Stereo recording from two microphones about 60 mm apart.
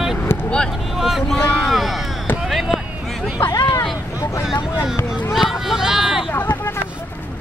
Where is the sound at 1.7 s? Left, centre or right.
Centre.